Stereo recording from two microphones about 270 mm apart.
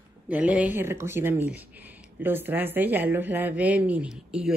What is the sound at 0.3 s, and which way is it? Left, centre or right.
A woman's voice, centre.